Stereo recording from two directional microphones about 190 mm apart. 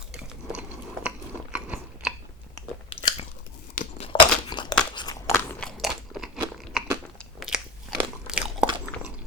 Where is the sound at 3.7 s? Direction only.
40° left (ahead or behind).